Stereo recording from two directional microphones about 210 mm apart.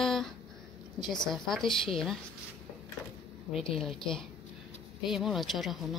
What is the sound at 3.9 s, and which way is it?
A woman's voice, 5° left (ahead or behind).